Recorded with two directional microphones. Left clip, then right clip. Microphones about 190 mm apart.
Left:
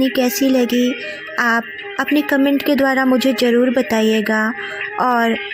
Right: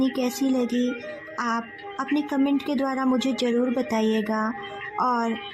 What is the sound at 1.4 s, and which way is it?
Music, 25° left (ahead or behind).